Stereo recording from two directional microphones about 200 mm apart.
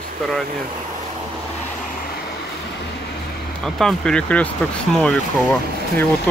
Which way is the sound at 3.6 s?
Centre (ahead or behind).